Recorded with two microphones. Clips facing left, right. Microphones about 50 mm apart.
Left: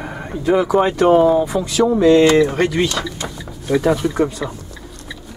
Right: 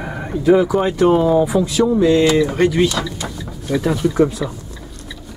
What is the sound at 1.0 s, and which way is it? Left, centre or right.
Speech, centre.